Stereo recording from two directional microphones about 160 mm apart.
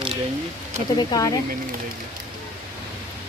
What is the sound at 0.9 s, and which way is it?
Speech, 25° left (ahead or behind).